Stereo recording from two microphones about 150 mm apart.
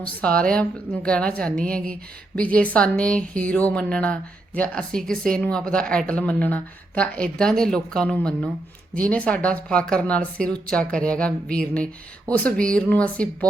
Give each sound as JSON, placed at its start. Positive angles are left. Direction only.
{"t": 0.0, "sound": "speech", "side_deg": 10}
{"t": 1.7, "sound": "speech", "side_deg": -75}
{"t": 2.3, "sound": "speech", "side_deg": 10}